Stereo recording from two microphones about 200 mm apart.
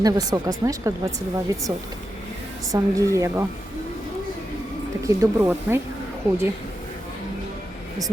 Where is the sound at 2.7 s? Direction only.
15° right (ahead or behind).